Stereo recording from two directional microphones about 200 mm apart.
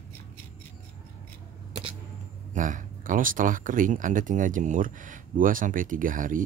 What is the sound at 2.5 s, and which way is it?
Speech, 40° right (ahead or behind).